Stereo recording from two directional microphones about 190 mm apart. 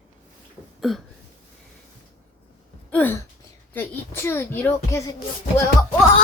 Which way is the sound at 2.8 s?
10° left (ahead or behind).